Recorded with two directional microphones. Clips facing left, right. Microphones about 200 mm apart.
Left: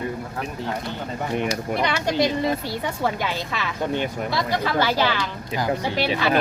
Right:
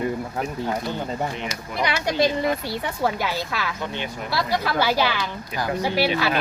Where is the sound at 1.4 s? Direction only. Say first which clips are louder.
Left 7 dB; 50° left (ahead or behind).